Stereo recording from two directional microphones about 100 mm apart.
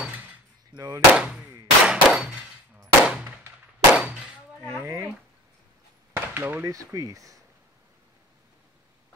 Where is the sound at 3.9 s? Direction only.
10° right (ahead or behind).